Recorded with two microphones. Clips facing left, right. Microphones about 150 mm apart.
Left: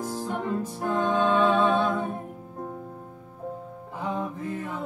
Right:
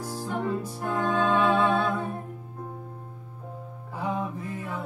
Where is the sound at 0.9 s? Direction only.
20° left (ahead or behind).